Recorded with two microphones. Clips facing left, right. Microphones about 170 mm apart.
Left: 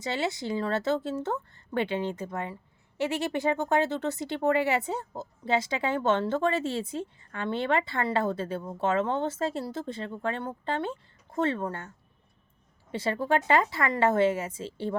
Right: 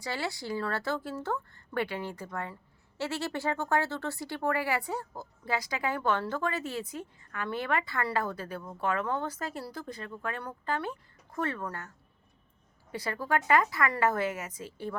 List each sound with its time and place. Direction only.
0.0 s speech: 20° left (ahead or behind)